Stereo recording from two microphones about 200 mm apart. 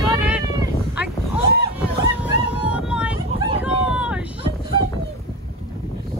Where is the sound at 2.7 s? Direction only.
5° right (ahead or behind).